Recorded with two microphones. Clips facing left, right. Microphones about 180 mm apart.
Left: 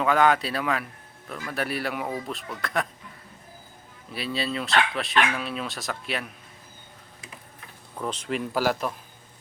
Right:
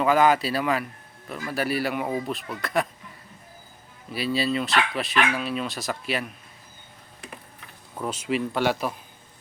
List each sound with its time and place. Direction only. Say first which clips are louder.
0.0 s speech: right 2 dB; centre (ahead or behind)
4.1 s speech: right 4 dB; 5° right (ahead or behind)
7.9 s speech: right 2 dB; 5° right (ahead or behind)